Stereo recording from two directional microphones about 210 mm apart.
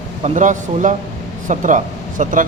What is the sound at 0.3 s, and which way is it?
Speech, 35° right (ahead or behind).